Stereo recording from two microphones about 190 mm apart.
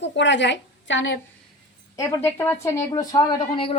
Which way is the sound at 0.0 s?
70° left (ahead or behind).